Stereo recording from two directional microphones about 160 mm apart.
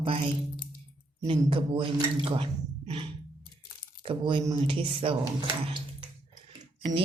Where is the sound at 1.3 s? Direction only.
35° right (ahead or behind).